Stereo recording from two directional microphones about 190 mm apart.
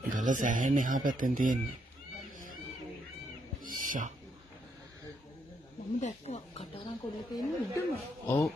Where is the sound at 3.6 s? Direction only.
45° right (ahead or behind).